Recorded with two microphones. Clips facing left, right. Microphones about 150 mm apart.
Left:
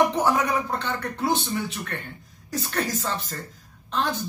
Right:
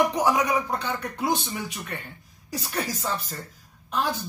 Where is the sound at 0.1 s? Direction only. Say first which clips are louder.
Even; 15° right (ahead or behind).